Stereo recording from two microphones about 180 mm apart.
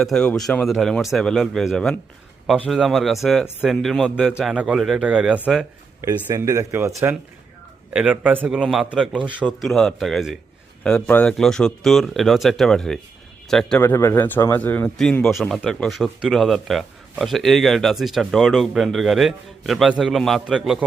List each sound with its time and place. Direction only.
0.0 s speech: 5° left (ahead or behind)
6.0 s speech: 15° right (ahead or behind)